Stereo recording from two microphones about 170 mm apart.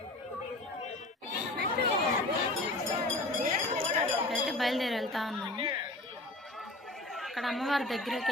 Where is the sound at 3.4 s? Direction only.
50° right (ahead or behind).